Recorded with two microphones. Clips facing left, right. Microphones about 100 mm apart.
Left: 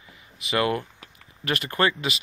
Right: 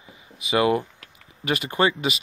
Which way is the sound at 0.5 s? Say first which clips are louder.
Right 4 dB; 20° right (ahead or behind).